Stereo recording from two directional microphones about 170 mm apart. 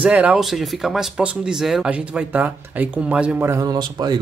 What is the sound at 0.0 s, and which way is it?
Speech, 5° right (ahead or behind).